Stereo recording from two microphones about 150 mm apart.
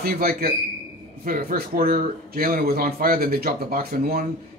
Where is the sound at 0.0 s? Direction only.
80° right.